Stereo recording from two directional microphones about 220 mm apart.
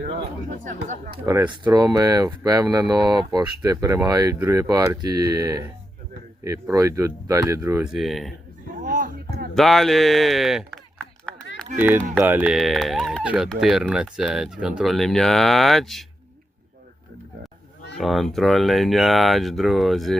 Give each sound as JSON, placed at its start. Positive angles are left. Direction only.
{"t": 0.2, "sound": "speech", "side_deg": -35}
{"t": 1.2, "sound": "speech", "side_deg": -15}
{"t": 8.7, "sound": "a sound", "side_deg": -40}
{"t": 9.6, "sound": "speech", "side_deg": 0}
{"t": 11.8, "sound": "speech", "side_deg": -10}
{"t": 17.9, "sound": "speech", "side_deg": 0}